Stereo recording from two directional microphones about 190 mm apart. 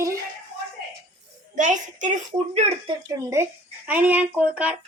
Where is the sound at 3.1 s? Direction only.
15° right (ahead or behind).